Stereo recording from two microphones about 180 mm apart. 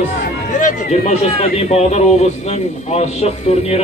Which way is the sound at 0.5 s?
40° left (ahead or behind).